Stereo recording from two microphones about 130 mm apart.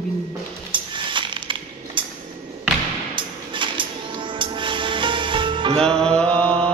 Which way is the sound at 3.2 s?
40° right (ahead or behind).